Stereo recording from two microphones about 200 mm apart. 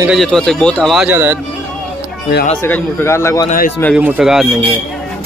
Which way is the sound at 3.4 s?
40° left (ahead or behind).